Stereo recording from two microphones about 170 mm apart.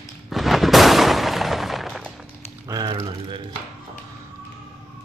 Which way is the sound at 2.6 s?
25° right (ahead or behind).